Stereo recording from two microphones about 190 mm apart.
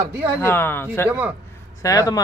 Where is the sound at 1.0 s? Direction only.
10° right (ahead or behind).